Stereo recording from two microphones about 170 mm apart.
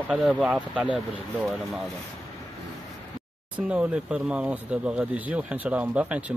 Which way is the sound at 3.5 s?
10° right (ahead or behind).